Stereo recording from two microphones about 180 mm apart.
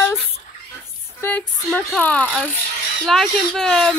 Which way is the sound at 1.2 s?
10° left (ahead or behind).